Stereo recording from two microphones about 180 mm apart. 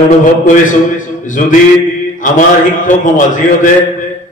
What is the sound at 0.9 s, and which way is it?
A man's voice, 45° left (ahead or behind).